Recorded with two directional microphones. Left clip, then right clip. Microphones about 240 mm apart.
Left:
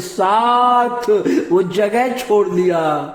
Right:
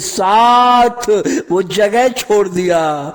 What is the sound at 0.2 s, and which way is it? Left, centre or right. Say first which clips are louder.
A man's voice: right 4 dB; right.